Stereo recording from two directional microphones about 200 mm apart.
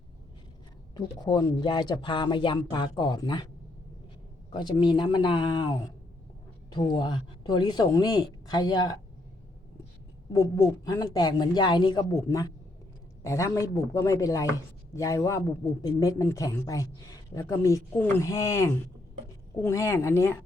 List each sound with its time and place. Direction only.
0.9 s speech: 20° left (ahead or behind)
4.5 s speech: 25° left (ahead or behind)
10.3 s a woman's voice: 15° left (ahead or behind)